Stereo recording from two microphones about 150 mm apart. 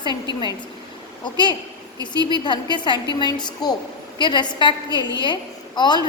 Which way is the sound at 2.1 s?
30° left (ahead or behind).